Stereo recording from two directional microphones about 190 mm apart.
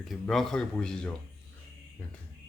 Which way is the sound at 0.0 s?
Centre (ahead or behind).